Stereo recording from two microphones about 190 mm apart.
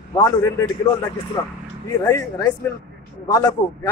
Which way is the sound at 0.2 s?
15° left (ahead or behind).